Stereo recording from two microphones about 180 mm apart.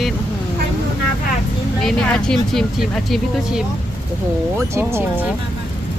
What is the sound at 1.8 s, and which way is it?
Speech, 5° left (ahead or behind).